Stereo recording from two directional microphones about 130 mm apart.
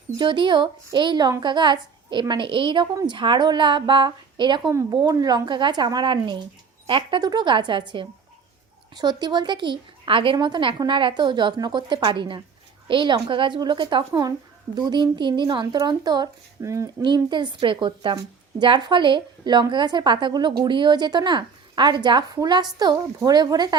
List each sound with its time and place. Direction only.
0.2 s a woman's voice: 40° right (ahead or behind)
4.7 s a woman's voice: 25° right (ahead or behind)
17.0 s a woman's voice: 35° right (ahead or behind)